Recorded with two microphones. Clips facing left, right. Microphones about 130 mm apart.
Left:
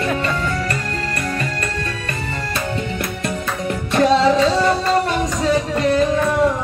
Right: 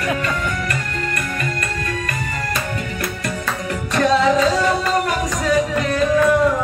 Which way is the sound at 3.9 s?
30° left (ahead or behind).